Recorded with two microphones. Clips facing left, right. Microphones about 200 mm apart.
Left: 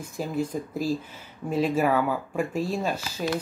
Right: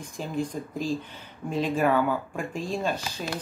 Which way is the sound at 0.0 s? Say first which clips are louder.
Left 2 dB; 5° left (ahead or behind).